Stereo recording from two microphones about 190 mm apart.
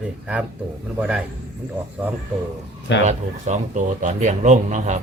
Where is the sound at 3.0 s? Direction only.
40° right (ahead or behind).